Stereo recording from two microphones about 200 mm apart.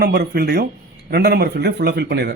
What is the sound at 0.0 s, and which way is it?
Speech, 50° right (ahead or behind).